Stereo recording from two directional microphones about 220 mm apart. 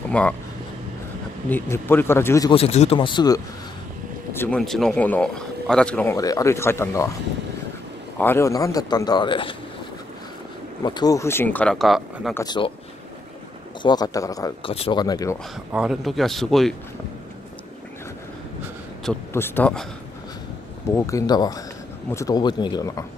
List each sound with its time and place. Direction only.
0.1 s speech: 5° left (ahead or behind)
1.5 s speech: 10° left (ahead or behind)
2.5 s speech: 30° left (ahead or behind)
4.3 s speech: 10° left (ahead or behind)
8.2 s speech: 10° left (ahead or behind)
10.8 s speech: 20° left (ahead or behind); by 12.4 s centre (ahead or behind)
12.4 s speech: 20° left (ahead or behind)
13.8 s speech: 20° left (ahead or behind)
15.7 s speech: 5° right (ahead or behind)
19.0 s speech: 10° left (ahead or behind)
20.9 s speech: 15° left (ahead or behind)